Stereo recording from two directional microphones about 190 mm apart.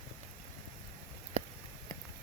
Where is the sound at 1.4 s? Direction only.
30° right (ahead or behind).